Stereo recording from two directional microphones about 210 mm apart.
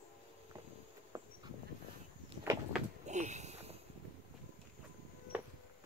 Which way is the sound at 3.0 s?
35° right (ahead or behind).